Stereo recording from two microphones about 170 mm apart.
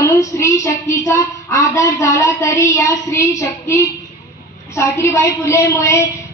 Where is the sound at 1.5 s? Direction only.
20° left (ahead or behind).